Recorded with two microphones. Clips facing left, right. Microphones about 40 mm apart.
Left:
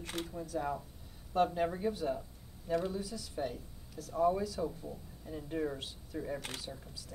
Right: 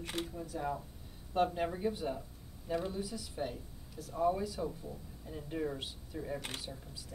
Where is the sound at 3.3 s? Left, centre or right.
Centre.